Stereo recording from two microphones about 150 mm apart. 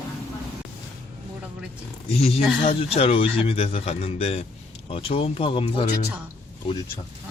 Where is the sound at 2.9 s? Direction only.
40° left (ahead or behind).